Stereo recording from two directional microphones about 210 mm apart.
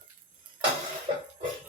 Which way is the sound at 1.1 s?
30° right (ahead or behind).